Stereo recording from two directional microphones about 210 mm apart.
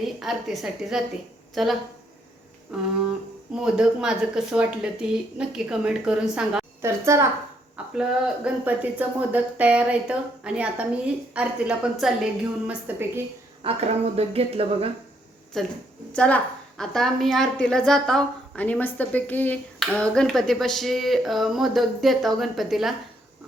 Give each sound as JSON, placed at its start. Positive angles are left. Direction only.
{"t": 0.0, "sound": "a woman's voice", "side_deg": 0}
{"t": 2.7, "sound": "a woman's voice", "side_deg": -5}
{"t": 13.6, "sound": "speech", "side_deg": -30}
{"t": 15.5, "sound": "a woman's voice", "side_deg": 0}